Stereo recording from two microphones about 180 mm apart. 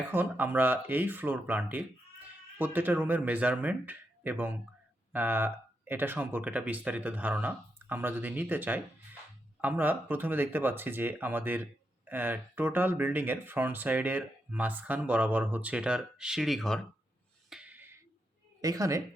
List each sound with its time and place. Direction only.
0.1 s speech: 10° right (ahead or behind)
17.5 s music: 5° right (ahead or behind)
18.6 s a woman's voice: 20° right (ahead or behind)